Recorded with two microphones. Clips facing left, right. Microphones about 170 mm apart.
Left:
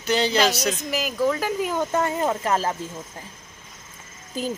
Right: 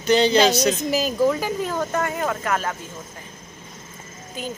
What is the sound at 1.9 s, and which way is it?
Speech, 25° left (ahead or behind).